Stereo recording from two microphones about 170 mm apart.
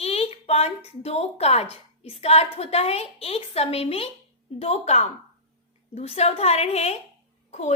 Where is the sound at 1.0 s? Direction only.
35° left (ahead or behind).